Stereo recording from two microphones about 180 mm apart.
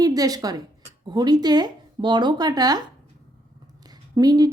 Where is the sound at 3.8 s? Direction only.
20° right (ahead or behind).